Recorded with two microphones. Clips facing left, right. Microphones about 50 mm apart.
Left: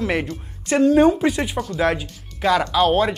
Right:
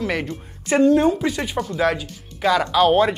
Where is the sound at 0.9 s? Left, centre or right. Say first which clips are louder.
Left 3 dB; centre.